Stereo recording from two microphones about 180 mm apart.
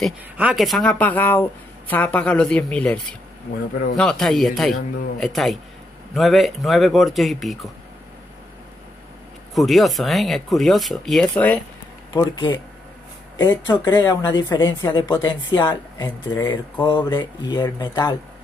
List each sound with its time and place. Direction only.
0.0 s speech: 5° right (ahead or behind)
9.5 s speech: centre (ahead or behind)
12.1 s speech: 25° left (ahead or behind)